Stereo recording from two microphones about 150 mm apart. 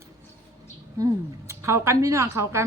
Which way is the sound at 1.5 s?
20° right (ahead or behind).